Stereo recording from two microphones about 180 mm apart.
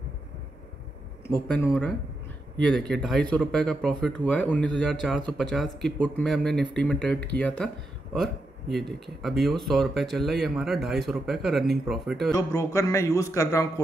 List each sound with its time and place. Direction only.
1.5 s speech: 10° left (ahead or behind)
12.3 s speech: 20° left (ahead or behind)